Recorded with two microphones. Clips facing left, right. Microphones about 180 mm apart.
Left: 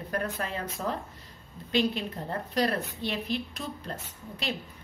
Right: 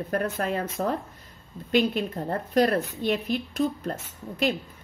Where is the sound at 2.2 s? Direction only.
50° right (ahead or behind).